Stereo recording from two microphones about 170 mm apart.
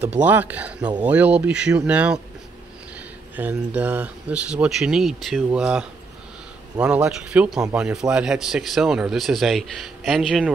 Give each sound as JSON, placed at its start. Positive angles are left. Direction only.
{"t": 0.2, "sound": "speech", "side_deg": -10}
{"t": 3.3, "sound": "speech", "side_deg": -10}